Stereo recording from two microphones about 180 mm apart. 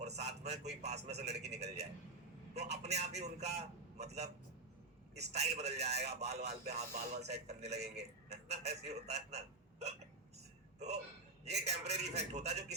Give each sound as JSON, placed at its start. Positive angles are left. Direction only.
{"t": 0.2, "sound": "a man's voice", "side_deg": -40}
{"t": 11.4, "sound": "a man's voice", "side_deg": -40}